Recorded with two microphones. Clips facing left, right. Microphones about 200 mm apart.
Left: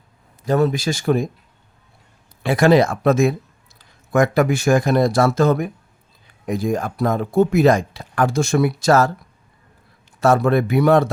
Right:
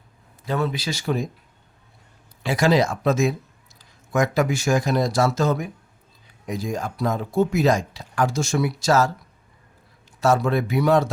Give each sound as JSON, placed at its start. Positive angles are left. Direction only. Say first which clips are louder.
{"t": 0.4, "sound": "speech", "louder": "left 7 dB", "side_deg": 45}
{"t": 2.4, "sound": "speech", "louder": "left 5 dB", "side_deg": 55}